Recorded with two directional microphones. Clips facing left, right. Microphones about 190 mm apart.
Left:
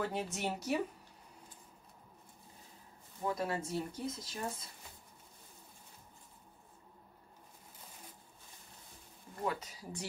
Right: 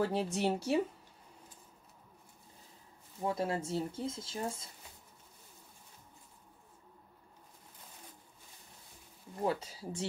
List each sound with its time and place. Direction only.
0.0 s speech: 30° right (ahead or behind)
3.3 s speech: 25° right (ahead or behind)
9.4 s speech: 30° right (ahead or behind)